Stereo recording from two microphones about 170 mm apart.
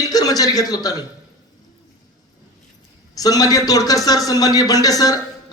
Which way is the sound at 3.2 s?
20° left (ahead or behind).